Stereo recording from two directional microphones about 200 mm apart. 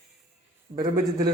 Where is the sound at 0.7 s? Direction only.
20° right (ahead or behind).